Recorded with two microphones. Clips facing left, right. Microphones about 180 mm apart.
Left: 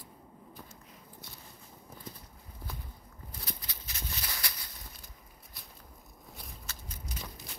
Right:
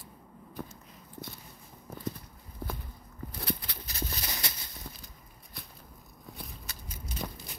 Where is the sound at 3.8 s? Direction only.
35° right (ahead or behind).